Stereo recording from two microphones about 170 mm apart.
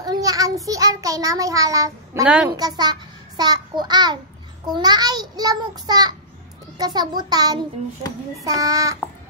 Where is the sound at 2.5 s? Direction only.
25° right (ahead or behind).